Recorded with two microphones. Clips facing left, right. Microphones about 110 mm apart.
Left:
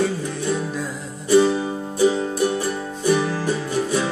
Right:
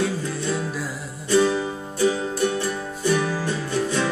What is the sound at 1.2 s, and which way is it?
Music, 15° left (ahead or behind).